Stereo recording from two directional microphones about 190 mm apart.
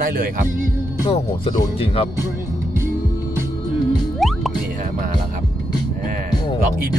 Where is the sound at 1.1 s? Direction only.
25° left (ahead or behind).